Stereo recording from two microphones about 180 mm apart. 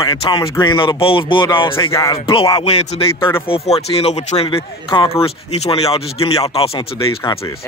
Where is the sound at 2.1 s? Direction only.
30° left (ahead or behind).